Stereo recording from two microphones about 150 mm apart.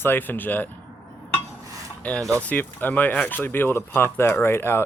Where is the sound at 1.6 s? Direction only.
20° right (ahead or behind).